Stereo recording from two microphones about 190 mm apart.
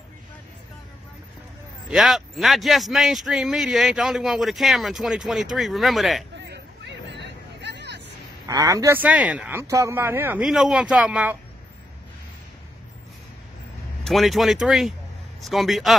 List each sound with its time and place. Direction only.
1.9 s a man's voice: centre (ahead or behind)
7.2 s vehicle: 65° right (ahead or behind)
8.5 s speech: 20° right (ahead or behind)
14.0 s a man's voice: centre (ahead or behind)